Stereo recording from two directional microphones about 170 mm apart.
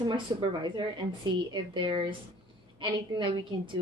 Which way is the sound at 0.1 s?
25° right (ahead or behind).